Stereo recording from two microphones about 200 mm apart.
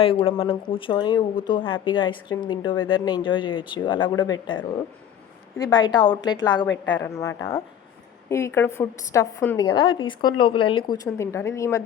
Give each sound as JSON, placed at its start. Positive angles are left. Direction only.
{"t": 0.0, "sound": "a woman's voice", "side_deg": 25}
{"t": 9.6, "sound": "a woman's voice", "side_deg": 25}